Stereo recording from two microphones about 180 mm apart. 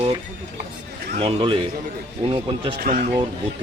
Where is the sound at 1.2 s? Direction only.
30° right (ahead or behind).